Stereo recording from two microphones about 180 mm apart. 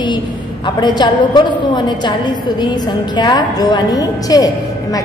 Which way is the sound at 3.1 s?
25° left (ahead or behind).